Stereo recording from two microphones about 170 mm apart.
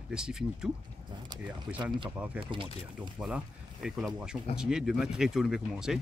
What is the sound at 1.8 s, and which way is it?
Speech, 25° right (ahead or behind).